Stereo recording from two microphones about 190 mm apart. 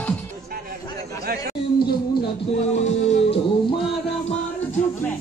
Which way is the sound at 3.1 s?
30° left (ahead or behind).